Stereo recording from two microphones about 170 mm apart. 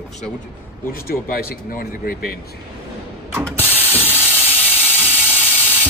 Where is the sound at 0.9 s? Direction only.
60° left (ahead or behind).